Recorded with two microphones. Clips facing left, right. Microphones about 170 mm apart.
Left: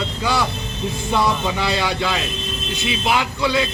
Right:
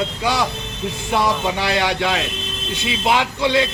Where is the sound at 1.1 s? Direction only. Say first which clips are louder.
Right 1 dB; 20° right (ahead or behind).